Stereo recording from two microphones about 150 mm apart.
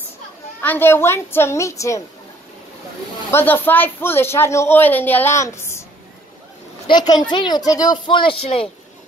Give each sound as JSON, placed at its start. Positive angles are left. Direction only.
{"t": 0.6, "sound": "speech", "side_deg": 15}
{"t": 3.3, "sound": "speech", "side_deg": 15}
{"t": 6.9, "sound": "a woman's voice", "side_deg": 30}